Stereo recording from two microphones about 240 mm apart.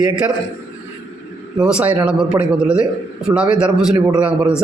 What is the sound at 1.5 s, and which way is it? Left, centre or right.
A man's voice, centre.